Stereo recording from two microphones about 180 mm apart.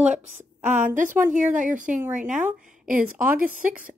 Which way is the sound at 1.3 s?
45° right (ahead or behind).